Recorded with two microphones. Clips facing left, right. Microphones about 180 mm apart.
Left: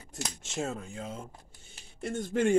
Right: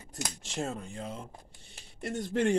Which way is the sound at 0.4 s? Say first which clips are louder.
Left 1 dB; centre (ahead or behind).